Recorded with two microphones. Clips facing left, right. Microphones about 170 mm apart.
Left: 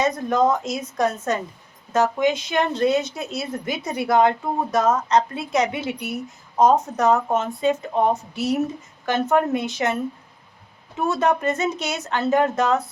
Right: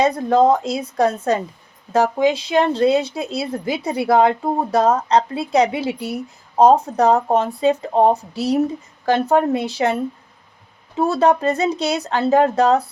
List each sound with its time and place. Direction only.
0.0 s speech: 30° right (ahead or behind)